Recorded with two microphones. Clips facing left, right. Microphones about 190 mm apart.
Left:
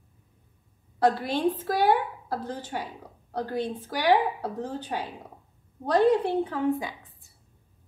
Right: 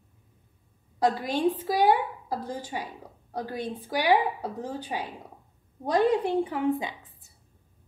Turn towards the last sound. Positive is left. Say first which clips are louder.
# right 1 dB
turn(degrees=-20)  # may be behind; listen again after turning